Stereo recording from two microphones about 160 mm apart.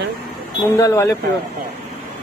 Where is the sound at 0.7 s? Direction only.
15° left (ahead or behind).